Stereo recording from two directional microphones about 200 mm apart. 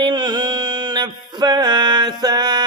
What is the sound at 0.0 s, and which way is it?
Mantra, 20° right (ahead or behind).